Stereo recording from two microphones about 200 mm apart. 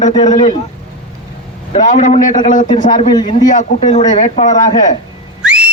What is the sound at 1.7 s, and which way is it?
Speech, 40° left (ahead or behind).